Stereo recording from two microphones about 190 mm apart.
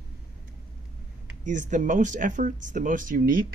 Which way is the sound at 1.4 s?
40° right (ahead or behind).